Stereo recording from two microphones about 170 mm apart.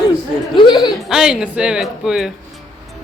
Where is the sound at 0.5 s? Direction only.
30° left (ahead or behind).